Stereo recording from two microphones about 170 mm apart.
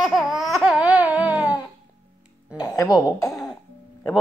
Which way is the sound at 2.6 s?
20° left (ahead or behind).